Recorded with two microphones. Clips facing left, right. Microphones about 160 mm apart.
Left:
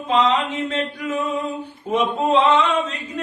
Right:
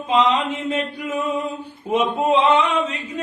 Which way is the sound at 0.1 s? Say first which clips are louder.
Even; 10° right (ahead or behind).